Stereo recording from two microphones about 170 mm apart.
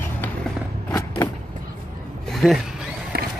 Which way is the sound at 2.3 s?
Centre (ahead or behind).